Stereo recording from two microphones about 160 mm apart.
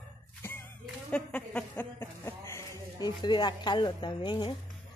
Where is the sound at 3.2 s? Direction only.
30° left (ahead or behind).